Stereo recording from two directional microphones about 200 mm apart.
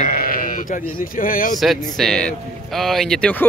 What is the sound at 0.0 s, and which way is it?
Speech, 45° left (ahead or behind).